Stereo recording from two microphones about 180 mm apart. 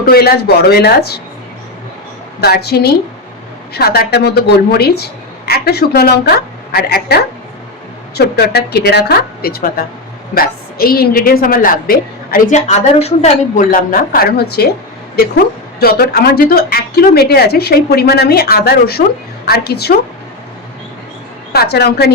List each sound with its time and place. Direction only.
0.0 s a woman's voice: 60° left (ahead or behind)
2.4 s a woman's voice: 60° left (ahead or behind)
12.5 s a woman's voice: 40° left (ahead or behind); by 14.7 s 60° left (ahead or behind)
15.8 s a woman's voice: 60° left (ahead or behind)
21.5 s a woman's voice: 65° left (ahead or behind)